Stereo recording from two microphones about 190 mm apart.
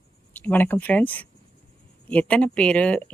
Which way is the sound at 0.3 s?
10° left (ahead or behind).